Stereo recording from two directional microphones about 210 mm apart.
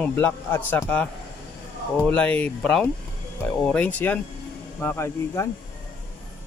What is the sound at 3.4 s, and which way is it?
Mantra, 5° left (ahead or behind).